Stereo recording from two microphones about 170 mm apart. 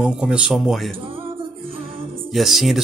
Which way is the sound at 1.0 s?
30° right (ahead or behind).